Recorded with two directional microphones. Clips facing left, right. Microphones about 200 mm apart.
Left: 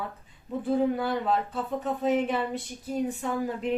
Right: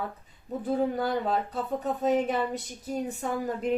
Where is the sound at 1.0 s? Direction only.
40° right (ahead or behind).